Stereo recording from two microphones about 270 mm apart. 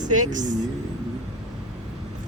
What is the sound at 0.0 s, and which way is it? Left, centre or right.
Speech, right.